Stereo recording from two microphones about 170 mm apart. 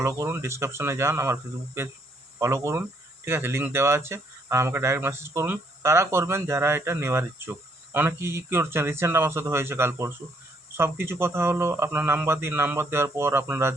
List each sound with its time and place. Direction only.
0.0 s speech: 20° right (ahead or behind)